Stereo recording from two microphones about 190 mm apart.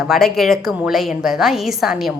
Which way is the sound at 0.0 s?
Centre (ahead or behind).